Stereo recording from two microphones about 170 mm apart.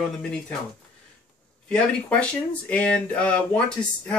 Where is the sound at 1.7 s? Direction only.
10° left (ahead or behind).